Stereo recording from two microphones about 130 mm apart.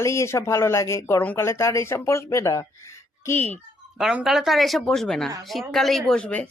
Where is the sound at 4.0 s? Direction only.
5° right (ahead or behind).